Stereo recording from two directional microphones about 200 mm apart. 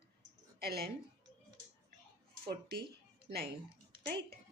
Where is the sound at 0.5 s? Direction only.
50° right (ahead or behind).